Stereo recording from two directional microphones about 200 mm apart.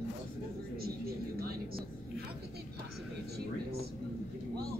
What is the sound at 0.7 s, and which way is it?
Speech, 50° right (ahead or behind).